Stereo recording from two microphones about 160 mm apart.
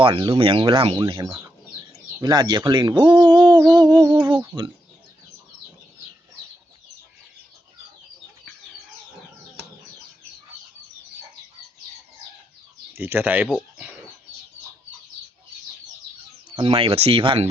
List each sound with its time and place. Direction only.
0.0 s speech: 30° right (ahead or behind)
3.8 s music: 30° right (ahead or behind)
4.5 s speech: 30° right (ahead or behind)
13.0 s speech: 10° right (ahead or behind)
16.6 s speech: 35° right (ahead or behind)